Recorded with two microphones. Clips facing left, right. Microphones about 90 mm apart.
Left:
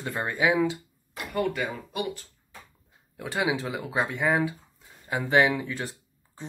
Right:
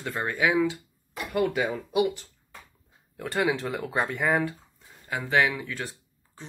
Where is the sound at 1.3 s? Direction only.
5° right (ahead or behind).